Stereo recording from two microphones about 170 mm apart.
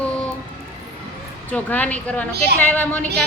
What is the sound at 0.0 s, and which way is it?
Music, 10° left (ahead or behind).